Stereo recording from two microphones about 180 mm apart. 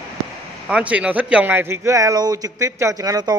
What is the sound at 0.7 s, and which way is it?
Speech, 5° right (ahead or behind).